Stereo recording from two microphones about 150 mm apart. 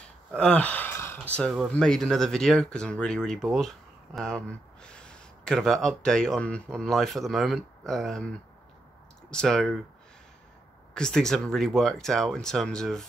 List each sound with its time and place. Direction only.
0.3 s a sound: 5° left (ahead or behind)
1.4 s speech: 5° left (ahead or behind)
11.0 s speech: 5° left (ahead or behind)